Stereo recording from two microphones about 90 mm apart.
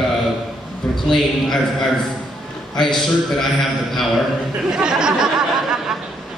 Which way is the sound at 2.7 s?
5° left (ahead or behind).